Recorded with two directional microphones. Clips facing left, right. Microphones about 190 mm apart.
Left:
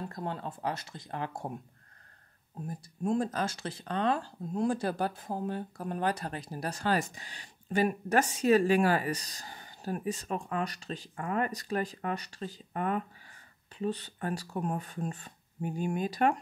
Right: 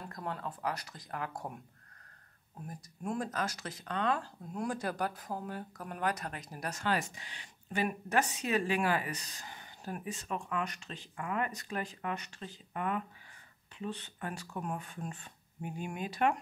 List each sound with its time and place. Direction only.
0.0 s speech: 25° left (ahead or behind)
2.6 s speech: 25° left (ahead or behind)